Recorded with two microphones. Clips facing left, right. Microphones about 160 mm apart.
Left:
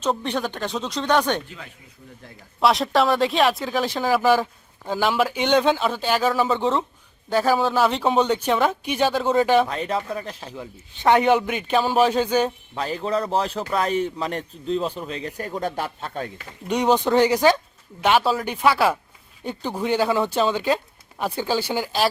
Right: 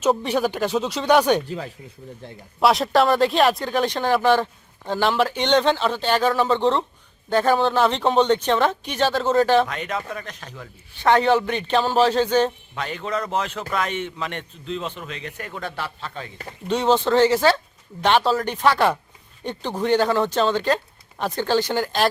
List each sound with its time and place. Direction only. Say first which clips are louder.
0.0 s speech: right 4 dB; 10° right (ahead or behind)
1.5 s speech: right 10 dB; 35° right (ahead or behind)
2.6 s speech: right 1 dB; centre (ahead or behind)
9.6 s speech: left 3 dB; 30° left (ahead or behind); by 12.5 s 10° left (ahead or behind)
12.7 s a man's voice: left 3 dB; 35° left (ahead or behind); by 16.3 s 50° left (ahead or behind)
16.6 s speech: even; 15° left (ahead or behind)